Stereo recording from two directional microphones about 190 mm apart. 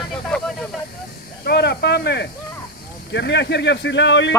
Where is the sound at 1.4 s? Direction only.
60° left (ahead or behind).